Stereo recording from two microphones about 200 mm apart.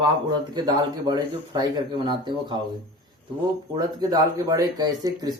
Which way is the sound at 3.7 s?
20° right (ahead or behind).